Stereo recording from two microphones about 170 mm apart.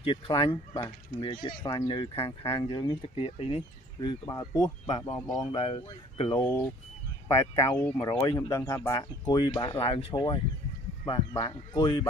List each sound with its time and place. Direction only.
0.0 s speech: 30° left (ahead or behind)
4.8 s speech: 35° left (ahead or behind)
6.3 s speech: 15° left (ahead or behind)